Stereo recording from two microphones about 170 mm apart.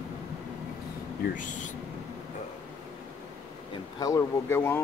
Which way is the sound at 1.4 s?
50° left (ahead or behind).